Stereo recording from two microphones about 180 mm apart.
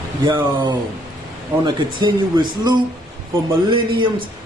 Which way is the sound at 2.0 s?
25° right (ahead or behind).